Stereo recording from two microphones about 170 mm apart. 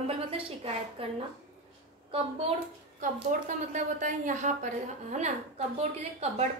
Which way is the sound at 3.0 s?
50° right (ahead or behind).